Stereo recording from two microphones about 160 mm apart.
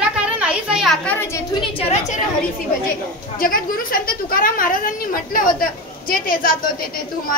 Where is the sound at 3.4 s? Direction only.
60° left (ahead or behind).